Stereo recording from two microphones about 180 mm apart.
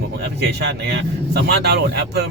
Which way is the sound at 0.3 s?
70° right (ahead or behind).